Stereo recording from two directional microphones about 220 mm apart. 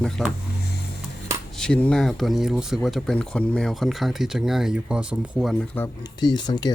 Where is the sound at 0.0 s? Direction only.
Centre (ahead or behind).